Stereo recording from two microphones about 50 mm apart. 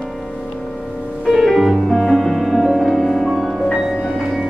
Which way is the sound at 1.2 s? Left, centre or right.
Centre.